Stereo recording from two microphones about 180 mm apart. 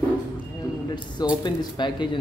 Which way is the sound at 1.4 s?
25° left (ahead or behind).